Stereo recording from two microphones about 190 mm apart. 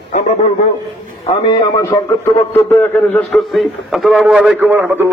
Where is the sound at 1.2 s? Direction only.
25° left (ahead or behind).